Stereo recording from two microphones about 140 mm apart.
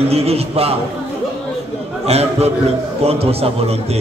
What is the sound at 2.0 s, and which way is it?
A man's voice, 50° right (ahead or behind).